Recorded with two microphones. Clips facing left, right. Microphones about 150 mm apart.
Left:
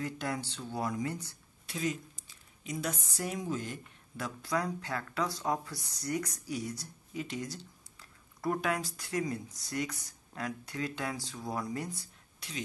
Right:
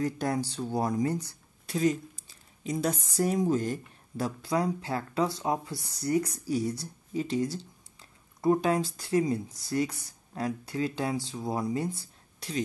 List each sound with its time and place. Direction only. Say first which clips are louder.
0.0 s a woman's voice: right 7 dB; 40° right (ahead or behind)
4.4 s speech: right 4 dB; 25° right (ahead or behind)